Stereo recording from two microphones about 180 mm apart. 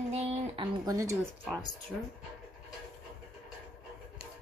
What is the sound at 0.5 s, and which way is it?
Speech, 25° right (ahead or behind).